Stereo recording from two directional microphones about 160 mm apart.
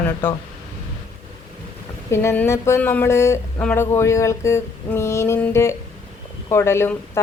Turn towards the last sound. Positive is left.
turn(degrees=15)  # may be behind; listen again after turning